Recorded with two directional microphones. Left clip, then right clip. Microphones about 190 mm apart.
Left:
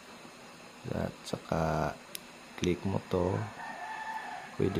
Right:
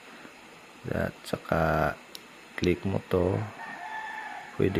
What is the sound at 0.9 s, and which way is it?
Speech, 15° right (ahead or behind).